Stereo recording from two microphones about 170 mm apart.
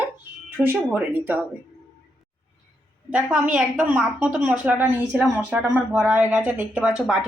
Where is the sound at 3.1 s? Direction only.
5° right (ahead or behind).